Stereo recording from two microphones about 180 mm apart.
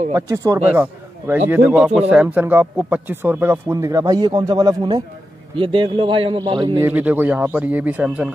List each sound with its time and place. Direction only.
0.1 s a man's voice: 20° right (ahead or behind)
6.8 s speech: 10° right (ahead or behind)